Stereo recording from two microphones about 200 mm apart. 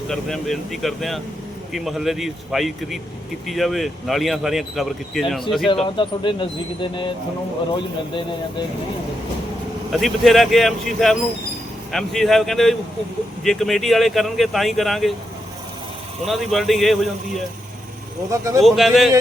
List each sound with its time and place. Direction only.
0.1 s speech: centre (ahead or behind)
5.6 s speech: 25° left (ahead or behind)
9.9 s speech: centre (ahead or behind)
16.2 s speech: centre (ahead or behind)
18.3 s speech: 15° right (ahead or behind)
18.6 s speech: centre (ahead or behind)